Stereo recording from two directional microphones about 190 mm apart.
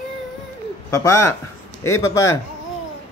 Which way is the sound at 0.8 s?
15° left (ahead or behind).